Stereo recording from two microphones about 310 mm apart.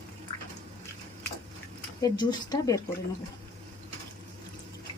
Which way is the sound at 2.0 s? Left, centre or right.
Centre.